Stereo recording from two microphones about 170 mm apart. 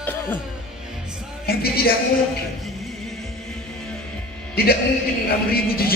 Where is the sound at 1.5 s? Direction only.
65° left (ahead or behind).